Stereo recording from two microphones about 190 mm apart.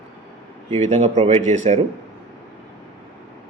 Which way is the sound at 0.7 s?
35° right (ahead or behind).